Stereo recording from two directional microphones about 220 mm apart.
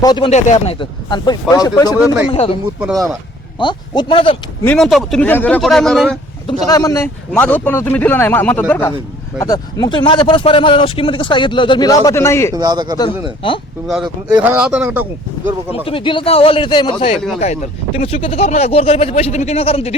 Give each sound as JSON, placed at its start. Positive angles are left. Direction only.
{"t": 0.0, "sound": "speech", "side_deg": 20}
{"t": 0.3, "sound": "speech", "side_deg": 30}
{"t": 3.6, "sound": "speech", "side_deg": 20}
{"t": 4.6, "sound": "speech", "side_deg": 5}
{"t": 6.7, "sound": "speech", "side_deg": 15}
{"t": 12.5, "sound": "speech", "side_deg": -20}
{"t": 13.4, "sound": "speech", "side_deg": 25}
{"t": 13.8, "sound": "speech", "side_deg": 0}
{"t": 14.3, "sound": "speech", "side_deg": -10}
{"t": 15.7, "sound": "speech", "side_deg": 25}